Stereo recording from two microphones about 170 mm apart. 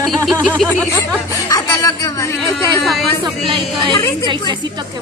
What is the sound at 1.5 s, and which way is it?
Speech, 20° left (ahead or behind).